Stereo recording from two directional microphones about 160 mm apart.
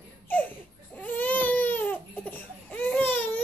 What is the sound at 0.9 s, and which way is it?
Baby cry, 10° left (ahead or behind).